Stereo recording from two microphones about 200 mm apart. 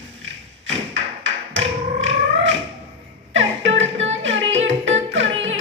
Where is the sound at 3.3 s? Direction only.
70° right (ahead or behind).